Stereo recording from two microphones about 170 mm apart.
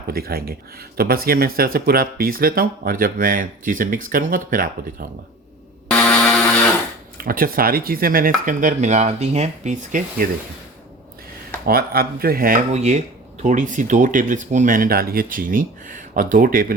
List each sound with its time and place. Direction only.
0.1 s speech: 65° right (ahead or behind)
6.0 s a sound: 5° left (ahead or behind)
7.2 s speech: 55° right (ahead or behind)
11.6 s speech: 60° right (ahead or behind)
12.7 s speech: 40° right (ahead or behind)